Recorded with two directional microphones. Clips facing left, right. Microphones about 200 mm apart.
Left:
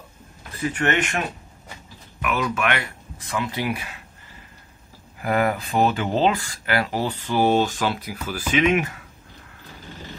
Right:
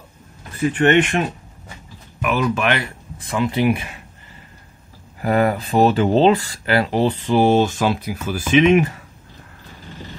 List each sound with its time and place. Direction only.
0.7 s speech: 30° right (ahead or behind)
2.2 s speech: 30° right (ahead or behind)
5.2 s speech: 35° right (ahead or behind)